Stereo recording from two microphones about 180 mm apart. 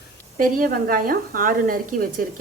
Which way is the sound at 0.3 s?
50° right (ahead or behind).